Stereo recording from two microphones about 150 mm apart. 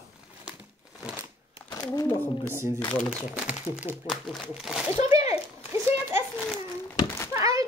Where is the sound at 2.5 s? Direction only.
15° right (ahead or behind).